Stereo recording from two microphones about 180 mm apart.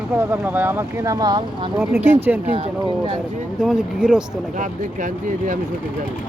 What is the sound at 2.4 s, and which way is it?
Speech, 35° right (ahead or behind).